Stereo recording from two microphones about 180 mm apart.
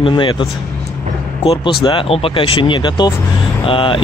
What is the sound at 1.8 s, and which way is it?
Speech, 30° left (ahead or behind).